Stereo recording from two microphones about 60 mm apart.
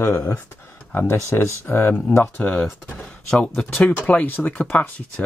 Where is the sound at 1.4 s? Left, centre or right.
Left.